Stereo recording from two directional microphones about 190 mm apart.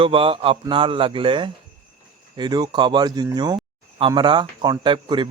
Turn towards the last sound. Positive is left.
turn(degrees=-25)  # may be behind; listen again after turning